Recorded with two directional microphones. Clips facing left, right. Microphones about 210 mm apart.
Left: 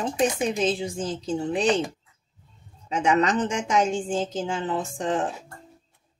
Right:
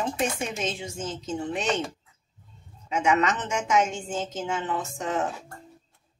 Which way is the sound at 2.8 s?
35° left (ahead or behind).